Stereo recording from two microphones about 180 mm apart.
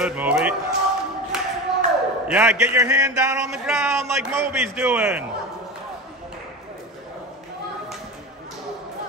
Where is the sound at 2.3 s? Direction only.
5° right (ahead or behind).